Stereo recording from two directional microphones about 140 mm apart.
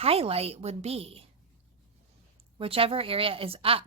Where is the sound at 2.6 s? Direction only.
40° right (ahead or behind).